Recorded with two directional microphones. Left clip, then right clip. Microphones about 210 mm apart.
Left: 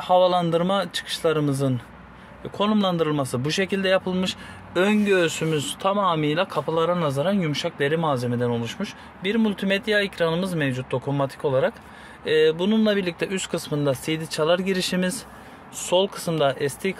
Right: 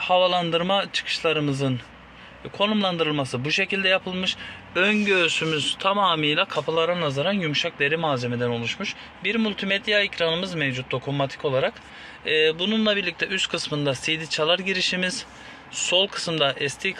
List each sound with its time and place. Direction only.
0.0 s speech: 25° left (ahead or behind)